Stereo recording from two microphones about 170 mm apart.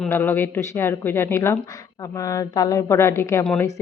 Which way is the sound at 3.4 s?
5° left (ahead or behind).